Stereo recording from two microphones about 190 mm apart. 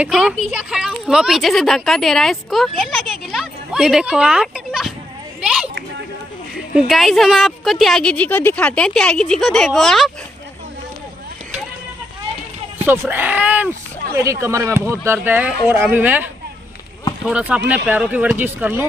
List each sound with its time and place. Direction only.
0.0 s speech: centre (ahead or behind)
5.4 s a sound: centre (ahead or behind)
6.7 s speech: centre (ahead or behind)
12.7 s speech: 10° right (ahead or behind)
17.3 s speech: 5° right (ahead or behind)